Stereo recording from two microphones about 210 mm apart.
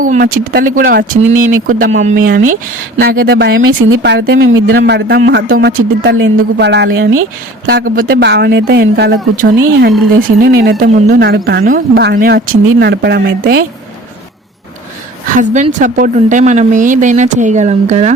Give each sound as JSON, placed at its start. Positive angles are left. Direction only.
{"t": 0.0, "sound": "a woman's voice", "side_deg": -40}
{"t": 3.7, "sound": "speech", "side_deg": -80}
{"t": 4.0, "sound": "speech", "side_deg": -50}
{"t": 6.0, "sound": "speech", "side_deg": -65}
{"t": 15.4, "sound": "a woman's voice", "side_deg": -35}